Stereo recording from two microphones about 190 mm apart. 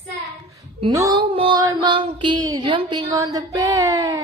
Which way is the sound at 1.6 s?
20° right (ahead or behind).